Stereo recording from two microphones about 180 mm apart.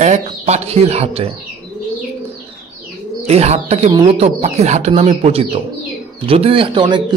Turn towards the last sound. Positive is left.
turn(degrees=-25)  # may be behind; listen again after turning